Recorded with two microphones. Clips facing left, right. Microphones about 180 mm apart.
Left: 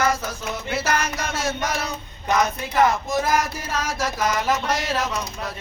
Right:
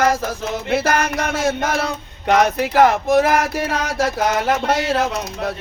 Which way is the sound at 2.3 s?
75° right (ahead or behind).